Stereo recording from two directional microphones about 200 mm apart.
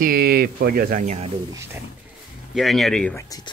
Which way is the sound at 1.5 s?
15° right (ahead or behind).